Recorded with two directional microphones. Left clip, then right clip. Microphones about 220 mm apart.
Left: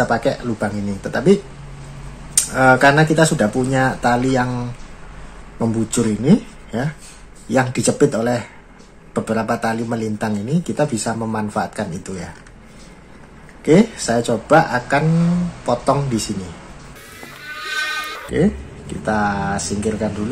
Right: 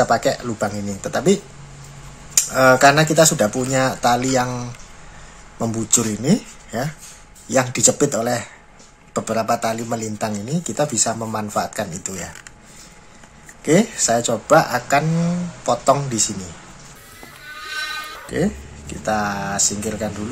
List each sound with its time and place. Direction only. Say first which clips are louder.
0.1 s speech: right 1 dB; 25° right (ahead or behind)
2.5 s speech: even; 25° right (ahead or behind)
13.7 s speech: left 2 dB; 15° right (ahead or behind)
17.2 s sheep: left 4 dB; centre (ahead or behind)
19.0 s speech: left 2 dB; 15° right (ahead or behind)